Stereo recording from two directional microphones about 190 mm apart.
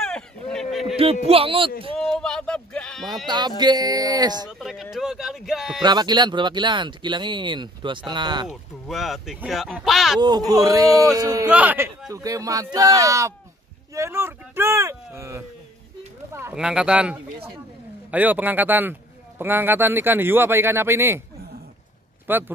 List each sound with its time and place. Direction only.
0.0 s a sound: 5° left (ahead or behind)
1.2 s speech: 30° right (ahead or behind)
2.0 s speech: centre (ahead or behind)
3.3 s speech: 20° right (ahead or behind)
4.5 s speech: centre (ahead or behind)
5.8 s speech: 20° right (ahead or behind)
8.5 s speech: centre (ahead or behind)
10.2 s speech: 20° right (ahead or behind)
22.3 s speech: 10° right (ahead or behind)